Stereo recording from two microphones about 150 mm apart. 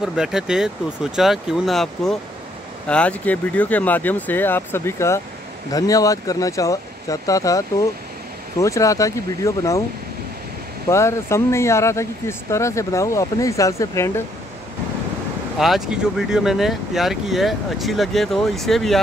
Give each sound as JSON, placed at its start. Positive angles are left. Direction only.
{"t": 0.0, "sound": "speech", "side_deg": -5}
{"t": 10.9, "sound": "speech", "side_deg": 20}
{"t": 15.6, "sound": "speech", "side_deg": -5}